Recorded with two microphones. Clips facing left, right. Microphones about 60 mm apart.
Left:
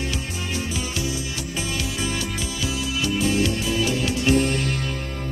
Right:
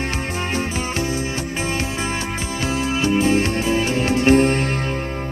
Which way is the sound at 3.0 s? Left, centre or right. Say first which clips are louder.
Right 4 dB; right.